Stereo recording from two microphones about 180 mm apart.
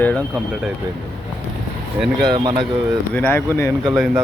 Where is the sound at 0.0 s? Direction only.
10° left (ahead or behind).